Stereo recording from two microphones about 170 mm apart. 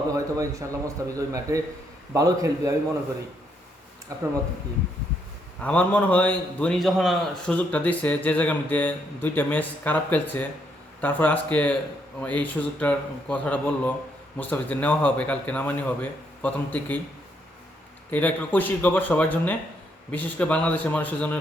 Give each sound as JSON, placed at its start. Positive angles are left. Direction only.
{"t": 0.1, "sound": "a man's voice", "side_deg": -20}
{"t": 5.6, "sound": "a man's voice", "side_deg": 10}
{"t": 18.1, "sound": "a man's voice", "side_deg": 10}